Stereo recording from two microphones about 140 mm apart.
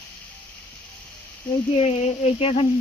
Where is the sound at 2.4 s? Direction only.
45° left (ahead or behind).